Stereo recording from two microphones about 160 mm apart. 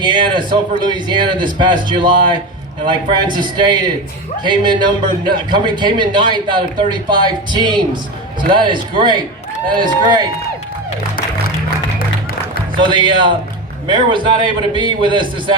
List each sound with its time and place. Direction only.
0.0 s a man's voice: 30° right (ahead or behind)
12.7 s a man's voice: 30° right (ahead or behind)